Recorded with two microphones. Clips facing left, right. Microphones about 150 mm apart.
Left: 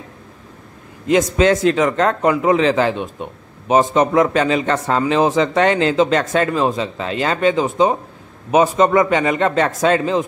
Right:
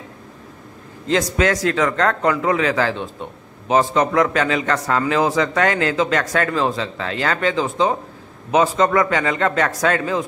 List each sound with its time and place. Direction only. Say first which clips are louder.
1.0 s a man's voice: left 4 dB; 20° left (ahead or behind)